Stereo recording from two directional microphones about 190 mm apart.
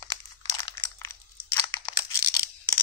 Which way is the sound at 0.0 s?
20° left (ahead or behind).